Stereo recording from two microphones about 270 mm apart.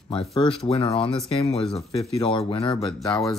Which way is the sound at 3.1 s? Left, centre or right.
Centre.